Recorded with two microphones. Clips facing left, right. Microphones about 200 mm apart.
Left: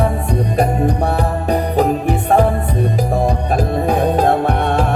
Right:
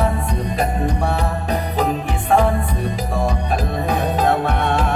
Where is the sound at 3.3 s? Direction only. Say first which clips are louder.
Left 4 dB; 55° left (ahead or behind).